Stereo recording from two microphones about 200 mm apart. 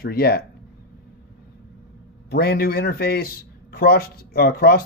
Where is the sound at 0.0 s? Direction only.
50° left (ahead or behind).